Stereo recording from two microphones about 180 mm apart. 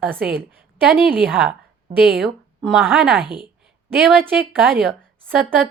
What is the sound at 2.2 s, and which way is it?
A woman's voice, centre (ahead or behind).